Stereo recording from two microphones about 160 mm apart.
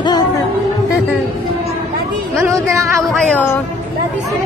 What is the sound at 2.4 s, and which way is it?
Speech, 15° right (ahead or behind).